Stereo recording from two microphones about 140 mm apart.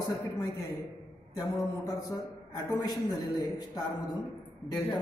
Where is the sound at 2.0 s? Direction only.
25° left (ahead or behind).